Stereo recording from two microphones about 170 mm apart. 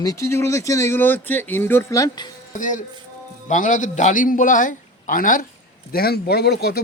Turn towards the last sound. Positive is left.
turn(degrees=70)  # may be behind; listen again after turning